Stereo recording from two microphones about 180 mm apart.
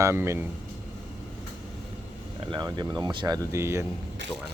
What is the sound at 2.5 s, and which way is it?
Speech, 25° right (ahead or behind).